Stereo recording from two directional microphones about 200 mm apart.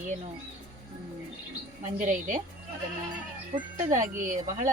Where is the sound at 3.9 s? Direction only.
40° right (ahead or behind).